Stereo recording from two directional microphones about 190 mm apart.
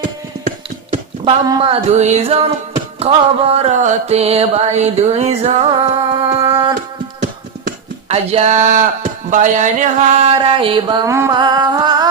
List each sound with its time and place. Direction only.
1.2 s singing: 25° right (ahead or behind)
8.0 s singing: 35° right (ahead or behind)
9.3 s a sound: 40° right (ahead or behind); by 12.0 s 20° right (ahead or behind)